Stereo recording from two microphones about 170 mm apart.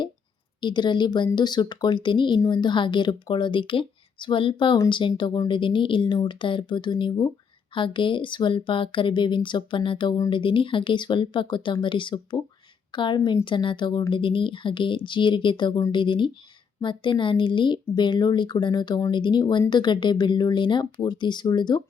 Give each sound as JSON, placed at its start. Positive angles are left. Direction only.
{"t": 0.6, "sound": "speech", "side_deg": 25}